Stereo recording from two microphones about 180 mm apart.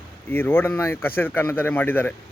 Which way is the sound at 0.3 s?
10° left (ahead or behind).